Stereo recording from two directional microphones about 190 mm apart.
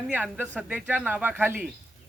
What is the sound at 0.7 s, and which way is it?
Speech, 5° right (ahead or behind).